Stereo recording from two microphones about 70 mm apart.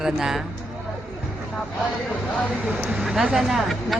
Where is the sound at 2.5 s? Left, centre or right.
Centre.